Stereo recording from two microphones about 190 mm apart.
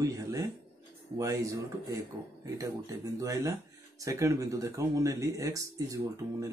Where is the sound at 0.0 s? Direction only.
15° right (ahead or behind).